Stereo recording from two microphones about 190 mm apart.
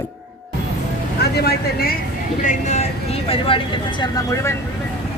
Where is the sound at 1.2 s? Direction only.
55° left (ahead or behind).